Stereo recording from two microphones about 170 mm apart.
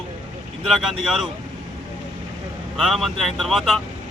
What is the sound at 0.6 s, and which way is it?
Speech, centre (ahead or behind).